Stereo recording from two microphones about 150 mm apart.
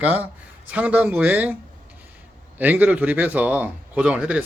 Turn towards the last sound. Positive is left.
turn(degrees=-5)  # may be behind; listen again after turning